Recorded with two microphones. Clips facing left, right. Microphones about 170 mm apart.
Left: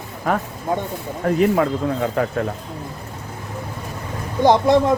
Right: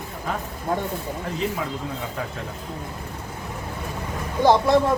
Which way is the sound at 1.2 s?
60° left (ahead or behind).